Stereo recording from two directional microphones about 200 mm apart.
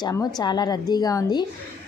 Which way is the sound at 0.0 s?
20° left (ahead or behind).